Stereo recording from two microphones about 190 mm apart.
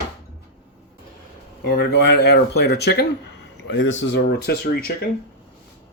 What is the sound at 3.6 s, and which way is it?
Speech, 90° left.